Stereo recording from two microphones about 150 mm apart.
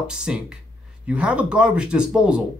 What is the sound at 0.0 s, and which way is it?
Speech, 5° right (ahead or behind).